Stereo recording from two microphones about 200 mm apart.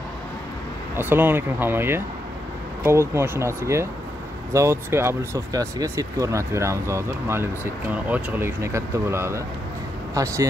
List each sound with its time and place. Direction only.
0.9 s speech: 10° right (ahead or behind)